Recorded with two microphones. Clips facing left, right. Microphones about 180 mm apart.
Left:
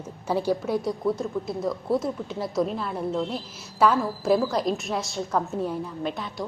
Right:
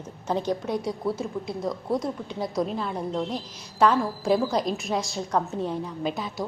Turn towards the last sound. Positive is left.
turn(degrees=0)  # may be behind; listen again after turning